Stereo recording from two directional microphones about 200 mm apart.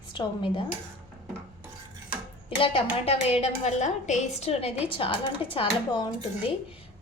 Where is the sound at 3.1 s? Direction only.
30° left (ahead or behind).